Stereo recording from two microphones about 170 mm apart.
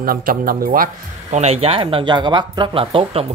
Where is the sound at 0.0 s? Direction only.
60° right (ahead or behind).